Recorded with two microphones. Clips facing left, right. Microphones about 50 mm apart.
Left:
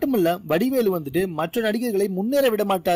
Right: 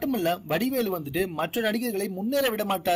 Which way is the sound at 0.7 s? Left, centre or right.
Left.